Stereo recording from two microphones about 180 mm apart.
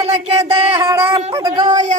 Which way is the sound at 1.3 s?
25° right (ahead or behind).